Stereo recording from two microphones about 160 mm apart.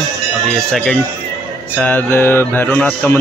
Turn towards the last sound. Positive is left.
turn(degrees=10)  # may be behind; listen again after turning